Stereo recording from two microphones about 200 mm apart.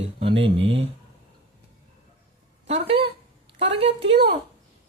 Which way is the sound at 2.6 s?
30° right (ahead or behind).